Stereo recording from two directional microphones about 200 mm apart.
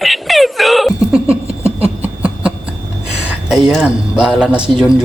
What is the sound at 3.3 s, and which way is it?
A man's voice, centre (ahead or behind).